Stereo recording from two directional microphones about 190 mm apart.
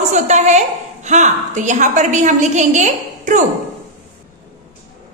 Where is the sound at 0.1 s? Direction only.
40° right (ahead or behind).